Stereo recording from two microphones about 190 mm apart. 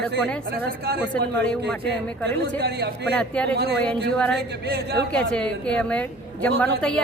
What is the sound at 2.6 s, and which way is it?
Speech, 60° right (ahead or behind).